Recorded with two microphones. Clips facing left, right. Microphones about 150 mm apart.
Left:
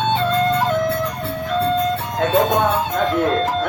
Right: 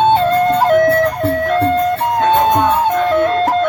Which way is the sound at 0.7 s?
65° right (ahead or behind).